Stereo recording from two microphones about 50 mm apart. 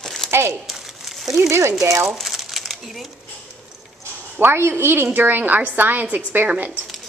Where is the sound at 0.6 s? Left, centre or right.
Centre.